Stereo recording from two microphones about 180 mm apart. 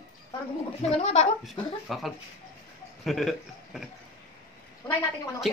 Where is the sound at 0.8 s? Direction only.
35° left (ahead or behind).